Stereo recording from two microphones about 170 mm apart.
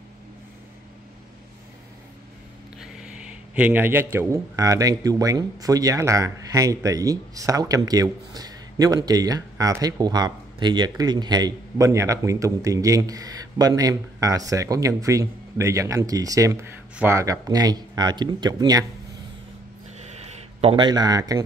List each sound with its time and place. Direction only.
2.8 s speech: 5° right (ahead or behind); by 18.9 s 20° right (ahead or behind)
20.2 s speech: 30° right (ahead or behind)